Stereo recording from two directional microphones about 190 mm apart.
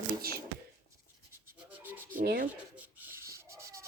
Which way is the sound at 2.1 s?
50° right (ahead or behind).